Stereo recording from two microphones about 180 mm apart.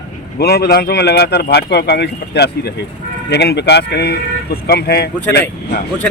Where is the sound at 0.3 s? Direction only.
60° left (ahead or behind).